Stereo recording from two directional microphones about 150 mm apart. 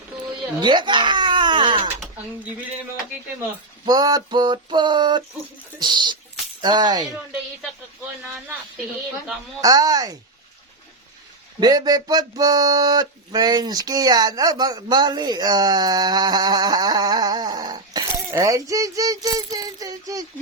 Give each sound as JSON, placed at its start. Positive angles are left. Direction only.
{"t": 0.6, "sound": "baby cry", "side_deg": -30}
{"t": 3.8, "sound": "a sound", "side_deg": -25}
{"t": 5.8, "sound": "speech", "side_deg": -30}
{"t": 9.6, "sound": "speech", "side_deg": -25}
{"t": 11.6, "sound": "speech", "side_deg": -25}